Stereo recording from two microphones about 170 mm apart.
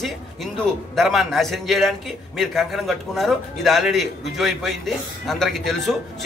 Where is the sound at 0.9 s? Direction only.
Centre (ahead or behind).